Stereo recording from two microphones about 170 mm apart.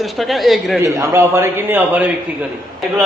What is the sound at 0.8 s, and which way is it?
A man's voice, 15° right (ahead or behind).